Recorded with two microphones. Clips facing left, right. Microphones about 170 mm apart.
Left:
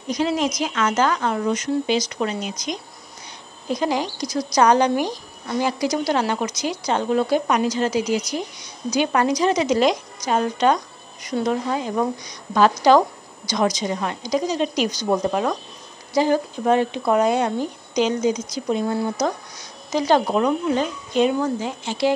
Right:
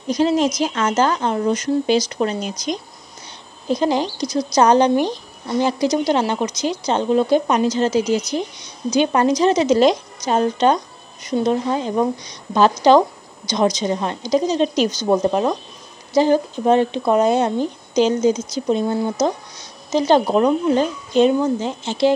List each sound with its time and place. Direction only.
0.1 s speech: 30° right (ahead or behind)